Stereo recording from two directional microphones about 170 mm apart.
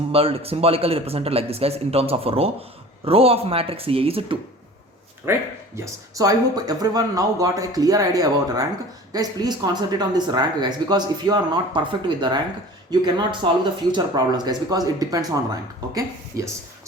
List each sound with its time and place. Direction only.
0.1 s speech: 35° right (ahead or behind)
5.2 s speech: 15° right (ahead or behind)